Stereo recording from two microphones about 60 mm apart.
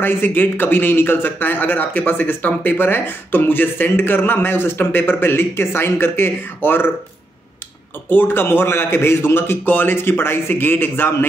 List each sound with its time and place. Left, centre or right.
0.0 s speech: left
8.1 s speech: left